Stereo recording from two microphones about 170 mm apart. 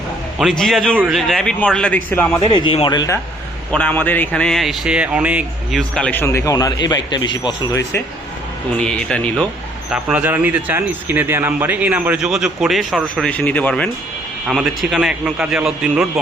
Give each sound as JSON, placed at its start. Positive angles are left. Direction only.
{"t": 0.6, "sound": "a man's voice", "side_deg": 0}
{"t": 2.4, "sound": "speech", "side_deg": 30}
{"t": 3.7, "sound": "speech", "side_deg": 5}
{"t": 8.8, "sound": "a man's voice", "side_deg": 5}
{"t": 9.9, "sound": "a man's voice", "side_deg": -5}